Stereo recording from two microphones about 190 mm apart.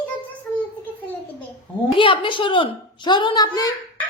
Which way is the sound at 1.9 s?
25° left (ahead or behind).